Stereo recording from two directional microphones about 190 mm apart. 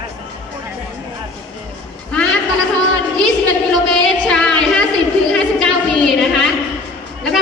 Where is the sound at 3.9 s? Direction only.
5° left (ahead or behind).